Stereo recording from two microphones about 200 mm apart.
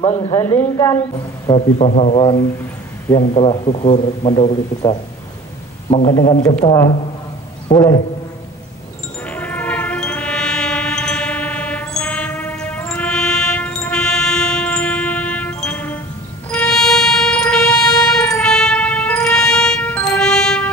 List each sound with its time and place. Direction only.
0.0 s a man's voice: 30° left (ahead or behind)
0.3 s speech: 15° left (ahead or behind)
1.5 s a man's voice: 35° left (ahead or behind)
9.2 s train: 5° left (ahead or behind)
16.4 s a sound: 5° left (ahead or behind)
18.3 s music: 5° left (ahead or behind)